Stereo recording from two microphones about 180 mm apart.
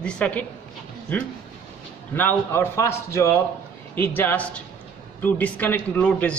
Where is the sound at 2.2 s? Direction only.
10° left (ahead or behind).